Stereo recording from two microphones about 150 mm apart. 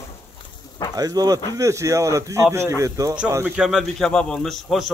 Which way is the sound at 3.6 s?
5° right (ahead or behind).